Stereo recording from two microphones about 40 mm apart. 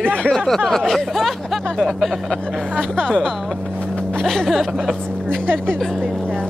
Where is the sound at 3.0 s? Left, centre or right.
Centre.